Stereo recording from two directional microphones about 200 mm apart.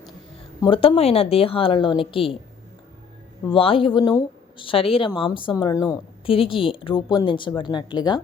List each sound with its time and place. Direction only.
0.6 s speech: 25° left (ahead or behind)
3.4 s speech: 25° left (ahead or behind)